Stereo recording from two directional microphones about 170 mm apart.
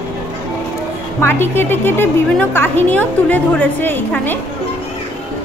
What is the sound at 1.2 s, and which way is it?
A woman's voice, 10° left (ahead or behind).